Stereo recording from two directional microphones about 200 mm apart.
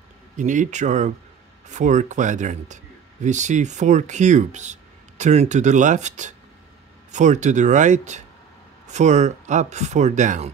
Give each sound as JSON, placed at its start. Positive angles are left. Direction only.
{"t": 0.4, "sound": "speech", "side_deg": -40}